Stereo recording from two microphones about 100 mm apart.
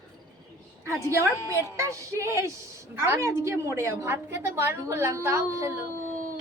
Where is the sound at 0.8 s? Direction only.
30° right (ahead or behind).